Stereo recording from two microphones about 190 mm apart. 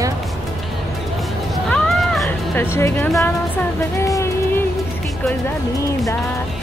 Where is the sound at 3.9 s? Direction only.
15° left (ahead or behind).